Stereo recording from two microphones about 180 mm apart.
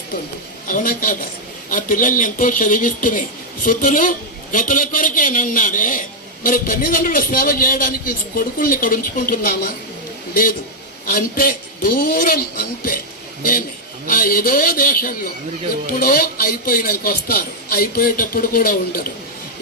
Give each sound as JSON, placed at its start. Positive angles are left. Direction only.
{"t": 0.7, "sound": "a man's voice", "side_deg": 50}
{"t": 11.1, "sound": "a man's voice", "side_deg": 50}
{"t": 14.1, "sound": "a man's voice", "side_deg": 50}